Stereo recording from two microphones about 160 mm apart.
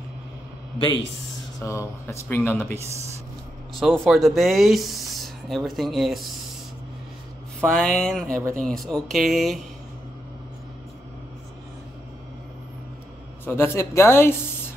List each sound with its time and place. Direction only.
1.6 s speech: 15° left (ahead or behind)
3.8 s speech: centre (ahead or behind)
7.6 s speech: 5° left (ahead or behind)
13.5 s speech: 15° left (ahead or behind)